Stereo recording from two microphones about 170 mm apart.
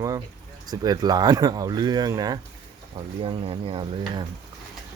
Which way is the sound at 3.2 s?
35° right (ahead or behind).